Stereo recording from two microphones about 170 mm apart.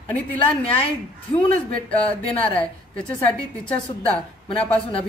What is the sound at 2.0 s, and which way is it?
Speech, 35° left (ahead or behind).